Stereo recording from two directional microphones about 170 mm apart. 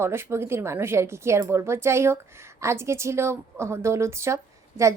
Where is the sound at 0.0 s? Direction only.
15° right (ahead or behind).